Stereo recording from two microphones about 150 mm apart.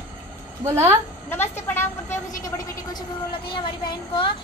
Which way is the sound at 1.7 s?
15° left (ahead or behind).